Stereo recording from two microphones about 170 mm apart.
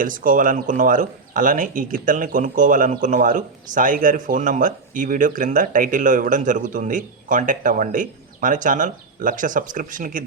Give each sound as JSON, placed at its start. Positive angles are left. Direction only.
{"t": 0.0, "sound": "speech", "side_deg": -50}